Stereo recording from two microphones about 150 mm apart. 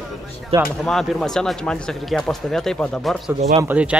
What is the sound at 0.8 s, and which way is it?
Speech, 5° left (ahead or behind).